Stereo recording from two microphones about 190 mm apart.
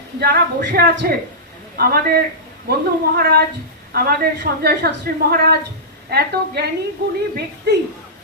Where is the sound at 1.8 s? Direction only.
50° right (ahead or behind).